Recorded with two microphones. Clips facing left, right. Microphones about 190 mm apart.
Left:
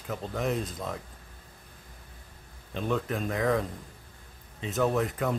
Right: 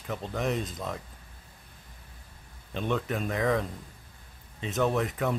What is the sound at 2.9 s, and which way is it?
Speech, centre (ahead or behind).